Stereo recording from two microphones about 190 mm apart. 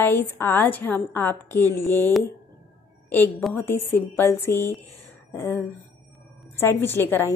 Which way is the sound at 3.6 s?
10° left (ahead or behind).